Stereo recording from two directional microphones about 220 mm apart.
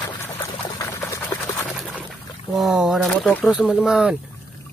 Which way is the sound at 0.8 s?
15° left (ahead or behind).